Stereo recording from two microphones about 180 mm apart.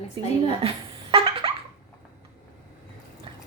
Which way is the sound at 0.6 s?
30° right (ahead or behind).